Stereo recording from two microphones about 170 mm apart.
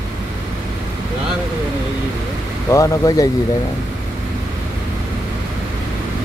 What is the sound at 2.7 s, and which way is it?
Speech, 20° left (ahead or behind).